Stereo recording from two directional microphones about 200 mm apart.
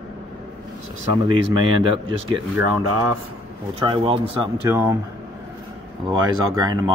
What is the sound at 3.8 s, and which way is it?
Speech, 25° right (ahead or behind).